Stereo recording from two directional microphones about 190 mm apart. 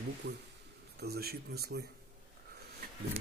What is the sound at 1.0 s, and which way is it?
Speech, 55° right (ahead or behind).